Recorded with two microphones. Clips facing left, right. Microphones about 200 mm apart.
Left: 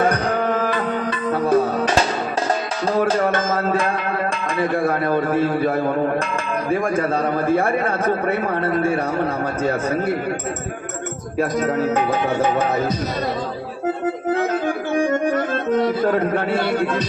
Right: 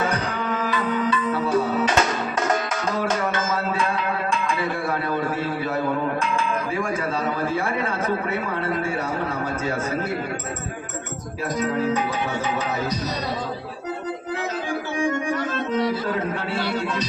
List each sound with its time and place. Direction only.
0.0 s music: 50° left (ahead or behind)
3.1 s music: 35° left (ahead or behind)
3.3 s music: 50° left (ahead or behind)
7.4 s speech: 55° left (ahead or behind)
11.3 s speech: 45° left (ahead or behind)
14.9 s speech: 50° left (ahead or behind)